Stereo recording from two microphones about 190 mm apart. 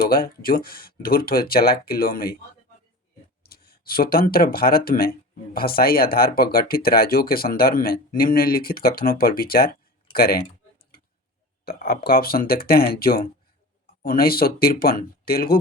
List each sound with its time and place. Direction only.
0.1 s speech: 50° left (ahead or behind)
3.4 s speech: 50° left (ahead or behind)
11.6 s speech: 55° left (ahead or behind)